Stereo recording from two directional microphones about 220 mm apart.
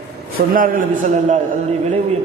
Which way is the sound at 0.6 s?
35° right (ahead or behind).